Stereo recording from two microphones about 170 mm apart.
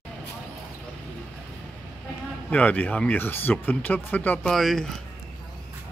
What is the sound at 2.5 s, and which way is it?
Speech, 10° left (ahead or behind).